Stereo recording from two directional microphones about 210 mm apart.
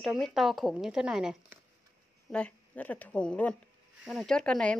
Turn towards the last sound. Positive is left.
turn(degrees=5)  # may be behind; listen again after turning